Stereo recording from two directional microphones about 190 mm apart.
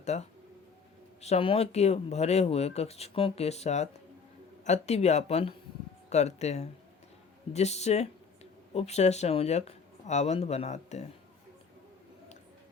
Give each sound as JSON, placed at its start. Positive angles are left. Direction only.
{"t": 0.0, "sound": "speech", "side_deg": 35}